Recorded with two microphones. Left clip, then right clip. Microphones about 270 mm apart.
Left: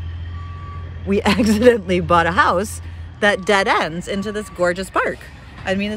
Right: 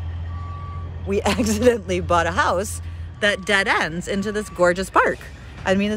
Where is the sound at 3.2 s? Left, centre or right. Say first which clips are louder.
Left 3 dB; centre.